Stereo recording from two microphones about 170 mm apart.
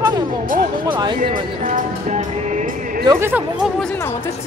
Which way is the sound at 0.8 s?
25° right (ahead or behind).